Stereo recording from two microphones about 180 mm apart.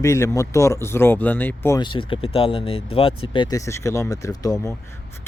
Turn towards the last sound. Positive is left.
turn(degrees=20)  # may be behind; listen again after turning